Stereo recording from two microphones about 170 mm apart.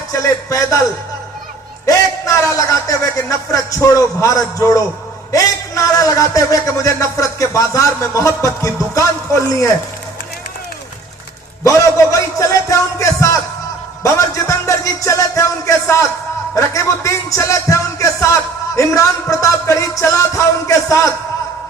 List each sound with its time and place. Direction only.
0.1 s a man's voice: 20° left (ahead or behind)
1.9 s a man's voice: 20° left (ahead or behind)
11.6 s a man's voice: 20° left (ahead or behind)